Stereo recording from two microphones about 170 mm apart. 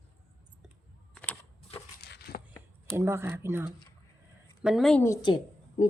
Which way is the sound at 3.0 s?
15° right (ahead or behind).